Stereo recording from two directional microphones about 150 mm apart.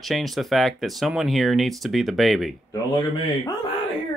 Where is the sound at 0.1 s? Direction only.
Centre (ahead or behind).